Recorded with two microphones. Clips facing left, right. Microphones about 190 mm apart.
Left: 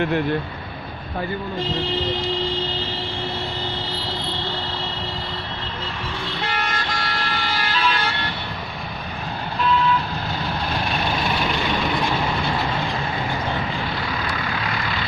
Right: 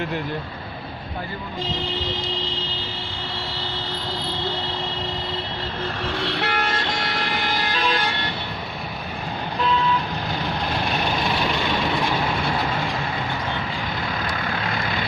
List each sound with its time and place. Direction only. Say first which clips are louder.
6.2 s vehicle: right 2 dB; 65° right (ahead or behind)
6.7 s vehicle: right 1 dB; 25° right (ahead or behind)